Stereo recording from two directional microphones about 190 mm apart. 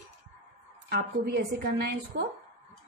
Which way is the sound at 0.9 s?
50° right (ahead or behind).